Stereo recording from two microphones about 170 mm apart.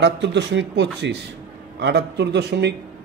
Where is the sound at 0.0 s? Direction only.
90° right.